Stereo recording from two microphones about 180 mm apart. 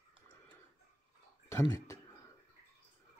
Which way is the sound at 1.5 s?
15° left (ahead or behind).